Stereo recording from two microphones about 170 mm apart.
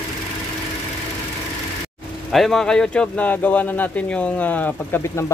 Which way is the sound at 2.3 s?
Centre (ahead or behind).